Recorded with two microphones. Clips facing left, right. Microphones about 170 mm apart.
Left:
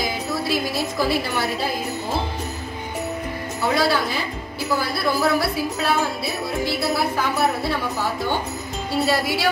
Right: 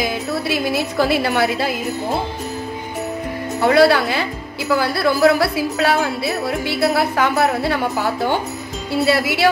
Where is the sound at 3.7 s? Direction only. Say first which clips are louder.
Right 8 dB; 65° right (ahead or behind).